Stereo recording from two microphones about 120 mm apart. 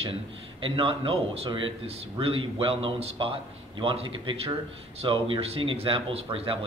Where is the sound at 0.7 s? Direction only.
45° right (ahead or behind).